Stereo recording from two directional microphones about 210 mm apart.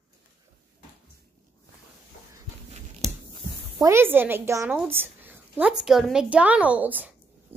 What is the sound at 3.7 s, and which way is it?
A woman's voice, 10° right (ahead or behind).